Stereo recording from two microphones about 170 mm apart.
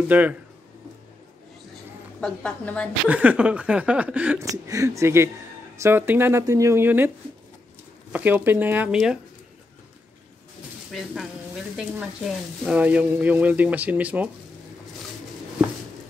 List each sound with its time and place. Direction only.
0.1 s speech: 10° right (ahead or behind)
2.1 s a woman's voice: 5° left (ahead or behind)
3.1 s speech: 10° right (ahead or behind)
4.5 s speech: 20° right (ahead or behind)
8.1 s speech: 10° right (ahead or behind)
10.9 s speech: centre (ahead or behind)